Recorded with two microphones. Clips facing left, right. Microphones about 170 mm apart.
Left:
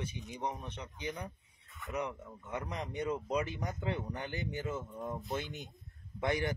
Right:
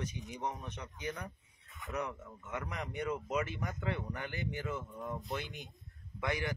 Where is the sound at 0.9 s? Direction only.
25° left (ahead or behind).